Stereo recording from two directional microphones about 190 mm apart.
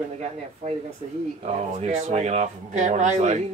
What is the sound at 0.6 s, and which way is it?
A man's voice, 40° right (ahead or behind).